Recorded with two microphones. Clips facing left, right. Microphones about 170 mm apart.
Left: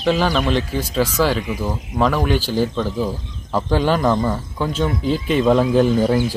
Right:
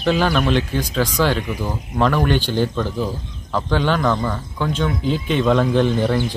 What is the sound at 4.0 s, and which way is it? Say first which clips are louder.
Speech: left 2 dB; 20° left (ahead or behind).